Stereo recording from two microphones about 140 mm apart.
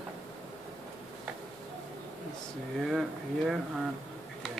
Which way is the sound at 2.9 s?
5° right (ahead or behind).